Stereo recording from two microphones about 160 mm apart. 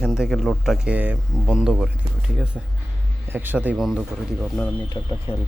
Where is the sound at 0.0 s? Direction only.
Centre (ahead or behind).